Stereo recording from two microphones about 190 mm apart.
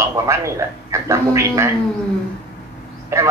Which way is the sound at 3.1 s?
15° right (ahead or behind).